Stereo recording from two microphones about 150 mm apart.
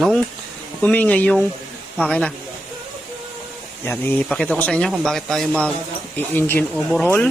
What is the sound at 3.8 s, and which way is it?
Speech, 15° left (ahead or behind).